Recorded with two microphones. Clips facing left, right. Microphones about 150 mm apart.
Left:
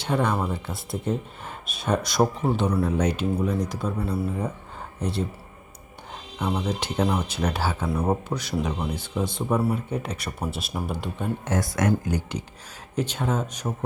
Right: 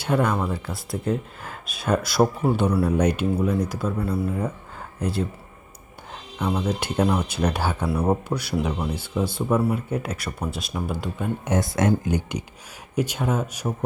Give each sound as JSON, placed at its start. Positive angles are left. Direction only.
{"t": 0.0, "sound": "speech", "side_deg": -5}
{"t": 6.4, "sound": "speech", "side_deg": -5}
{"t": 11.4, "sound": "speech", "side_deg": -25}
{"t": 13.0, "sound": "speech", "side_deg": -10}